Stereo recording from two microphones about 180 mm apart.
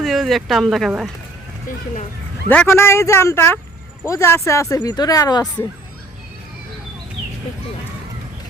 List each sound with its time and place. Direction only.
0.0 s speech: centre (ahead or behind)
2.5 s speech: 10° left (ahead or behind)